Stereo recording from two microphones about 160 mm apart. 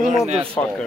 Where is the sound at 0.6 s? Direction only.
15° left (ahead or behind).